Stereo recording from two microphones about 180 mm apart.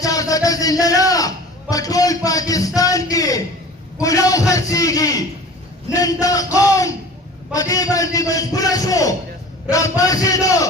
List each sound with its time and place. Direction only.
0.0 s a man's voice: 20° left (ahead or behind)